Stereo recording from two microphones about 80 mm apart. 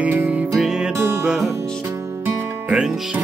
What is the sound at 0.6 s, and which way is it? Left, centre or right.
Music, centre.